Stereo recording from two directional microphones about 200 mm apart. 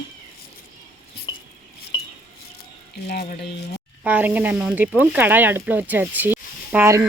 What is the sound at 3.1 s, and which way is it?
Speech, 55° left (ahead or behind).